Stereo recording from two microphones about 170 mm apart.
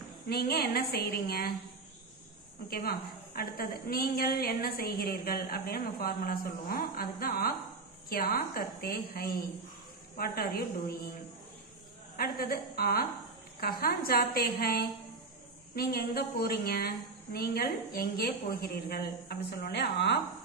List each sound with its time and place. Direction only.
0.3 s a woman's voice: 65° left (ahead or behind)
2.7 s a woman's voice: 60° left (ahead or behind)
12.2 s a woman's voice: 65° left (ahead or behind); by 20.2 s 85° left